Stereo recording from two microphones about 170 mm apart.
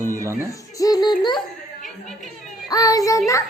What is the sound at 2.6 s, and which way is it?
Child singing, 20° left (ahead or behind).